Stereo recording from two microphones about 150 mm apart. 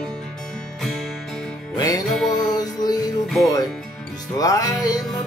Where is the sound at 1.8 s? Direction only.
25° left (ahead or behind).